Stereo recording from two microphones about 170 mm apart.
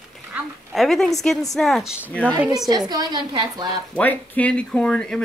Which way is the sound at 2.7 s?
25° right (ahead or behind).